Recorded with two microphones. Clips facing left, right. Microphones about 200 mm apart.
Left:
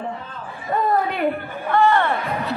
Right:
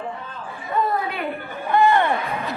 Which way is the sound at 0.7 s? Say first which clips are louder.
Left 1 dB; 45° left (ahead or behind).